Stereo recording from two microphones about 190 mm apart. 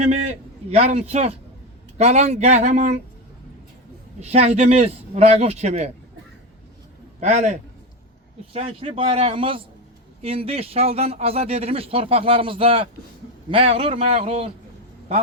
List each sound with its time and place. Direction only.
0.0 s a man's voice: 35° right (ahead or behind)
4.2 s speech: 35° right (ahead or behind)
7.2 s speech: 40° right (ahead or behind)